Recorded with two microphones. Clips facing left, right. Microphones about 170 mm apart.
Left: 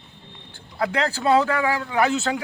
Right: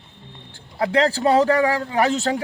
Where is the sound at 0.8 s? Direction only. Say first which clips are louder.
Right 5 dB; 30° right (ahead or behind).